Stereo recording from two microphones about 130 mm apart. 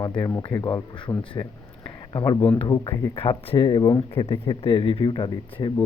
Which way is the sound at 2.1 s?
35° left (ahead or behind).